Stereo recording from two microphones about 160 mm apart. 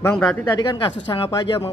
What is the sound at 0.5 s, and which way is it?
Speech, 30° left (ahead or behind).